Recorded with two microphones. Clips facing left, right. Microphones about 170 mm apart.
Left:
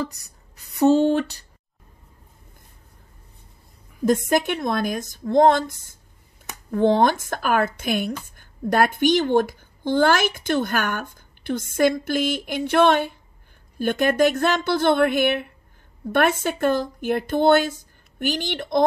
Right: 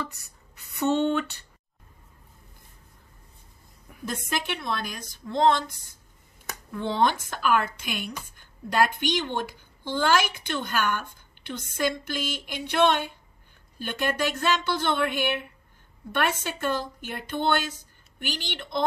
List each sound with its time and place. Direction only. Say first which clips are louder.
0.0 s speech: left 6 dB; 40° left (ahead or behind)
4.0 s speech: left 12 dB; 45° left (ahead or behind)